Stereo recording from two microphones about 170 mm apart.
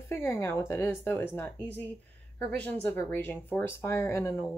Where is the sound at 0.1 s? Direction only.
15° left (ahead or behind).